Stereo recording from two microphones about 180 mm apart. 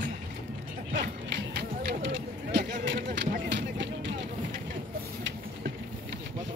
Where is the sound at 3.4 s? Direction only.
80° right.